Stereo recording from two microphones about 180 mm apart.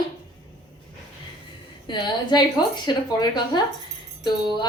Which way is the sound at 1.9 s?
25° left (ahead or behind).